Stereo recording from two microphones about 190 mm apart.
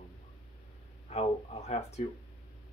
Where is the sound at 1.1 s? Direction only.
35° left (ahead or behind).